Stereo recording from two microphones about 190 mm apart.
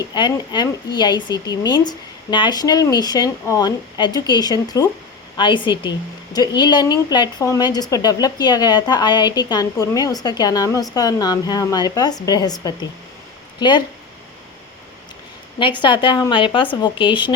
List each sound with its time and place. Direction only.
0.1 s speech: 25° left (ahead or behind)
15.8 s speech: 25° left (ahead or behind)